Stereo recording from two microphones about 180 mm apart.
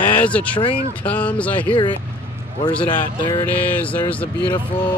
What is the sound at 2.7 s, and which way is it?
Speech, 5° left (ahead or behind).